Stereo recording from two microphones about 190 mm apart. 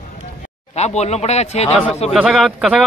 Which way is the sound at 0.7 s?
35° left (ahead or behind).